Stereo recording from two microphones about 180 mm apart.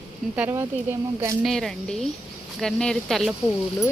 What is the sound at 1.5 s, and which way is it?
Speech, centre (ahead or behind).